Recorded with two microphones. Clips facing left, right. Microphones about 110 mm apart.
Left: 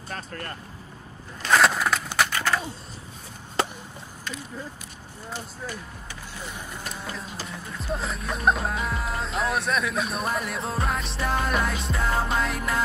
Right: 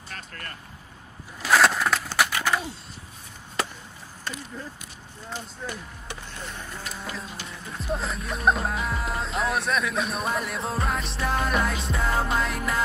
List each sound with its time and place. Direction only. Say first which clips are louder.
0.1 s speech: left 5 dB; 30° left (ahead or behind)
1.4 s a sound: even; centre (ahead or behind)
5.6 s speech: right 1 dB; 5° left (ahead or behind)
7.4 s speech: right 1 dB; centre (ahead or behind)